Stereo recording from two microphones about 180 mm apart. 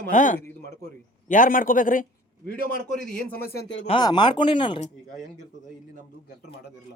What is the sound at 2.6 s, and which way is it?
Speech, 60° right (ahead or behind).